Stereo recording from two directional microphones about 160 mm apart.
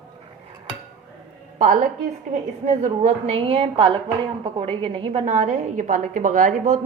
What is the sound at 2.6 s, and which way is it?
A woman's voice, 40° right (ahead or behind).